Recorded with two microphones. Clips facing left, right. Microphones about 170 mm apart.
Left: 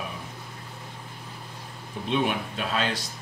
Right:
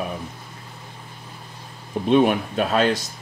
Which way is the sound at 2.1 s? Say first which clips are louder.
Right 9 dB; 50° right (ahead or behind).